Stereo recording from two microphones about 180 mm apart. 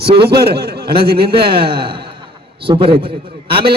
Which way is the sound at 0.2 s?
65° right (ahead or behind).